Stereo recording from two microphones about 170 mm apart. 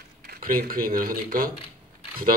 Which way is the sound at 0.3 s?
60° right (ahead or behind).